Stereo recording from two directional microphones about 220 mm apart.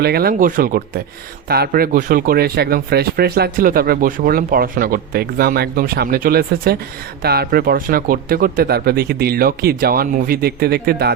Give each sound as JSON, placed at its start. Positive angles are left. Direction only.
{"t": 0.0, "sound": "speech", "side_deg": -45}